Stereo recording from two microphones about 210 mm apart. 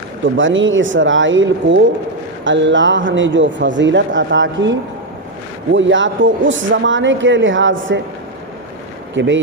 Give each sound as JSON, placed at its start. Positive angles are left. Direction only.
{"t": 0.3, "sound": "a man's voice", "side_deg": -65}
{"t": 9.1, "sound": "a man's voice", "side_deg": -60}